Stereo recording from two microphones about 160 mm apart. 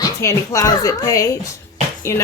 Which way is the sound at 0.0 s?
20° left (ahead or behind).